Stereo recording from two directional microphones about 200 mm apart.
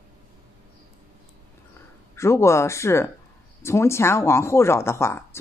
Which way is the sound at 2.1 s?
15° left (ahead or behind).